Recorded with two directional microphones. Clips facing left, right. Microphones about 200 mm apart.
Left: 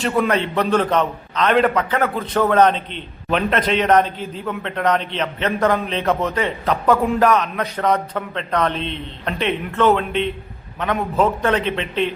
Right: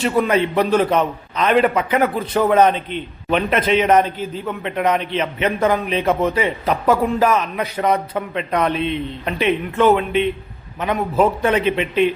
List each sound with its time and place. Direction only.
0.0 s a man's voice: 5° right (ahead or behind)